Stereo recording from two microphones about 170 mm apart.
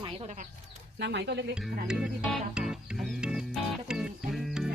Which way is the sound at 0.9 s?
85° right.